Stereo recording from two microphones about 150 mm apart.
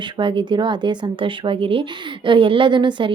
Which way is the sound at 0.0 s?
30° right (ahead or behind).